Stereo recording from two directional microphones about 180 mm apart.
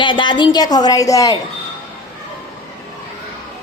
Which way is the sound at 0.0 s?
25° left (ahead or behind).